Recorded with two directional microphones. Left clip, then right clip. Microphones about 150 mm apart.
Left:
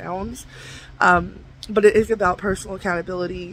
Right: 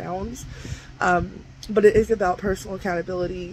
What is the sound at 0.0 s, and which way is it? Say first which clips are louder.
Speech: left 2 dB; 30° left (ahead or behind).